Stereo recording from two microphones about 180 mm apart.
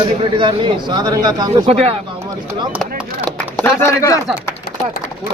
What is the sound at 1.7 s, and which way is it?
Speech, 35° right (ahead or behind).